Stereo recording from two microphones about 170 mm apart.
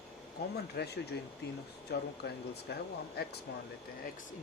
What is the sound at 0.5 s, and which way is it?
Speech, 75° left (ahead or behind).